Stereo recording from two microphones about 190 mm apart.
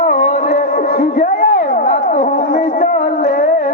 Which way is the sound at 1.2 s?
40° left (ahead or behind).